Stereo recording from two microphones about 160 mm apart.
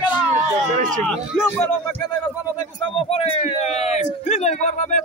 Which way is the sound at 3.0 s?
40° left (ahead or behind).